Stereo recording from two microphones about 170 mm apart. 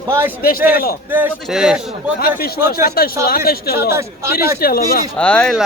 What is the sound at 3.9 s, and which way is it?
Speech, 15° right (ahead or behind).